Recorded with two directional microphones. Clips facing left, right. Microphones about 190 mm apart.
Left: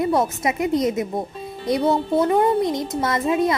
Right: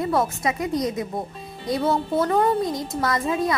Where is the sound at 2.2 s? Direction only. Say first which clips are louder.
Left 2 dB; 20° left (ahead or behind).